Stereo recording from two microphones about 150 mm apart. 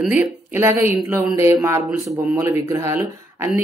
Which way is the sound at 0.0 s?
10° right (ahead or behind).